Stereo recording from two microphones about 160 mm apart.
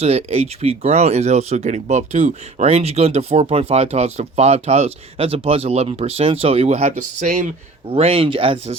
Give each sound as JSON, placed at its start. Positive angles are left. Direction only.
{"t": 0.0, "sound": "speech", "side_deg": -40}
{"t": 7.9, "sound": "speech", "side_deg": -35}